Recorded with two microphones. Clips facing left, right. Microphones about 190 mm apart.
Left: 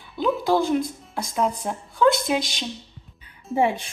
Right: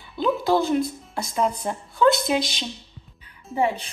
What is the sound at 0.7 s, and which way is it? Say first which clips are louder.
Music: right 1 dB; centre (ahead or behind).